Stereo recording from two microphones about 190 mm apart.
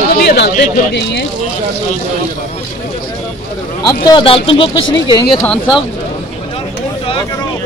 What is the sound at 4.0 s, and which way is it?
Speech, 25° left (ahead or behind).